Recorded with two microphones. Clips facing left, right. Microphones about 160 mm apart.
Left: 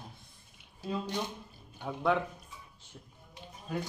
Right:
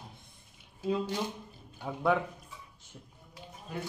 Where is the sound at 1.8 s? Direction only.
5° right (ahead or behind).